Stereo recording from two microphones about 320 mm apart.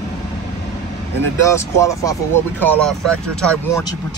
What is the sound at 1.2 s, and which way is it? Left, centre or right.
Speech, centre.